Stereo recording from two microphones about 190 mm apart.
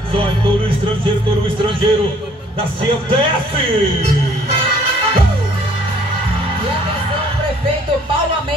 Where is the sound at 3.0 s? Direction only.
30° right (ahead or behind).